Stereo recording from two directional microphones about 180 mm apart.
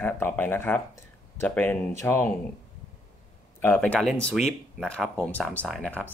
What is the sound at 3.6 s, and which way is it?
Speech, 10° left (ahead or behind).